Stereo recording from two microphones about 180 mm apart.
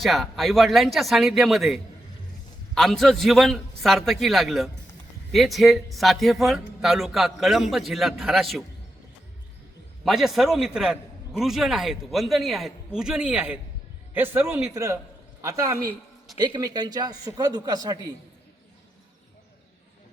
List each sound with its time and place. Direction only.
0.0 s a man's voice: centre (ahead or behind)
10.0 s a man's voice: centre (ahead or behind); by 18.1 s 20° right (ahead or behind)